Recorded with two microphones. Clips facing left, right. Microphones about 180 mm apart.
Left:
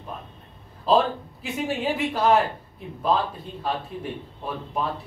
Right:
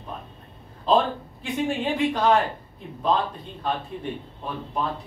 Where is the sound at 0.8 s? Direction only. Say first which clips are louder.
Left 1 dB; 5° left (ahead or behind).